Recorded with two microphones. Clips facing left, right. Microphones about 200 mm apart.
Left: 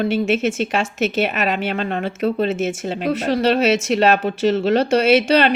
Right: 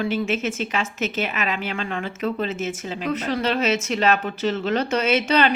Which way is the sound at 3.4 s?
70° left (ahead or behind).